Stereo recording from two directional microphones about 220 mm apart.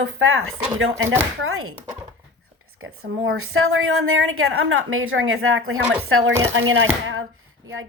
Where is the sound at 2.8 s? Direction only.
70° right (ahead or behind).